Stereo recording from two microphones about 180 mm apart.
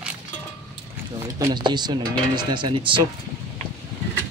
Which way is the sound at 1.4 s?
25° right (ahead or behind).